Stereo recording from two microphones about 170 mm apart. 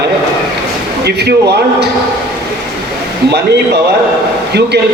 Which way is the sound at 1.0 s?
75° right (ahead or behind).